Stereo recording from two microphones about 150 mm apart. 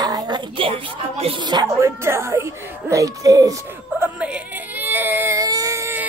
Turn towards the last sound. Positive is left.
turn(degrees=-15)  # may be behind; listen again after turning